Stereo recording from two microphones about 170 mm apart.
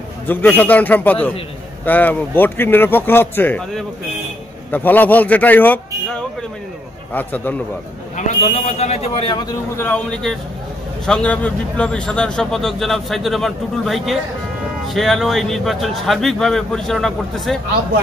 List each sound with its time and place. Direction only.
0.3 s a man's voice: 10° left (ahead or behind)
7.2 s a man's voice: 10° left (ahead or behind)
8.3 s speech: 40° left (ahead or behind)
11.1 s a man's voice: 5° left (ahead or behind)